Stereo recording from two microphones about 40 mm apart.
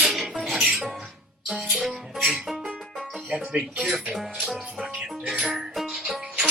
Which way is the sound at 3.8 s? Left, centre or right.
Centre.